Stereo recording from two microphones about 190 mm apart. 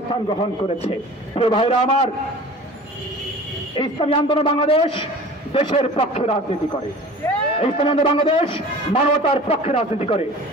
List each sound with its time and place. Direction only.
0.1 s a man's voice: 30° left (ahead or behind)
3.7 s a man's voice: 30° left (ahead or behind)
7.5 s a man's voice: 30° left (ahead or behind)